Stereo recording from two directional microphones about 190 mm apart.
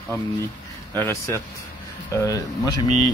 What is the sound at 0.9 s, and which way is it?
Speech, 10° left (ahead or behind).